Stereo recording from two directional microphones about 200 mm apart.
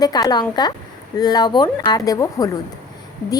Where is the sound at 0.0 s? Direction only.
20° left (ahead or behind).